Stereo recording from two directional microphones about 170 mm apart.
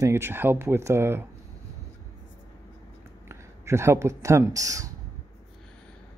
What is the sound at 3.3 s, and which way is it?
Speech, 15° right (ahead or behind).